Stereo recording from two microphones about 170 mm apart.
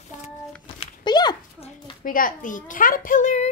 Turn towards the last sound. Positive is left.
turn(degrees=45)  # may be behind; listen again after turning